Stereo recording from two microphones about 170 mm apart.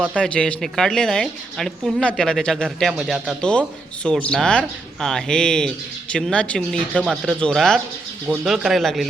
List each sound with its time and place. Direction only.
0.2 s speech: 5° left (ahead or behind)